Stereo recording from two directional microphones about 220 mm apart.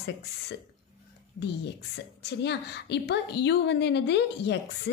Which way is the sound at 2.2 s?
50° left (ahead or behind).